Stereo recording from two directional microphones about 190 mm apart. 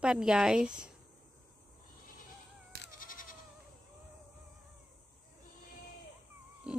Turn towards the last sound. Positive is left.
turn(degrees=-5)  # may be behind; listen again after turning